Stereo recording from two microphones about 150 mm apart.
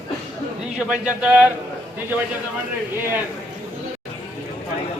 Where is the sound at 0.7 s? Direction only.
5° right (ahead or behind).